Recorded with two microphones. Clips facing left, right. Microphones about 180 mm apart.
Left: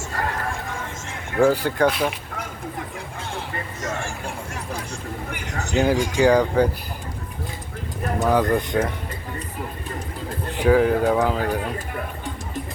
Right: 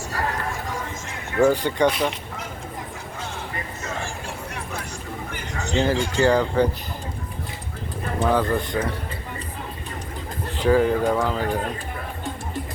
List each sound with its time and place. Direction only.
1.4 s speech: 5° left (ahead or behind)
5.7 s speech: 10° left (ahead or behind)
8.3 s speech: 15° left (ahead or behind)
10.6 s speech: 5° left (ahead or behind)